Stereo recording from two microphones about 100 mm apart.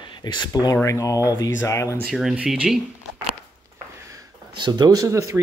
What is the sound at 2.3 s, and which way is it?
Speech, 10° right (ahead or behind).